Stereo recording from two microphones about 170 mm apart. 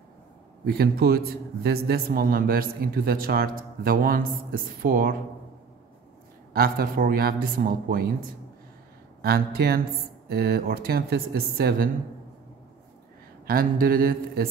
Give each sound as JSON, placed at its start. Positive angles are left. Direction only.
{"t": 0.7, "sound": "a man's voice", "side_deg": -65}
{"t": 6.5, "sound": "a man's voice", "side_deg": -60}
{"t": 9.2, "sound": "a man's voice", "side_deg": -65}
{"t": 13.5, "sound": "a man's voice", "side_deg": -60}